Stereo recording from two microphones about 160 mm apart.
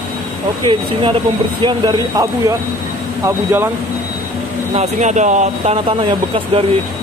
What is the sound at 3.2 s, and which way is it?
Speech, 15° right (ahead or behind).